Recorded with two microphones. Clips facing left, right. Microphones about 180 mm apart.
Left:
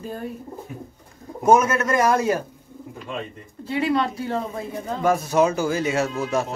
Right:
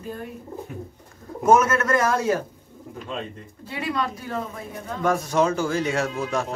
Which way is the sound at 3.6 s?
25° left (ahead or behind).